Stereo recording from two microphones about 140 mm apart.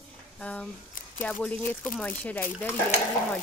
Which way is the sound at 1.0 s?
75° left (ahead or behind).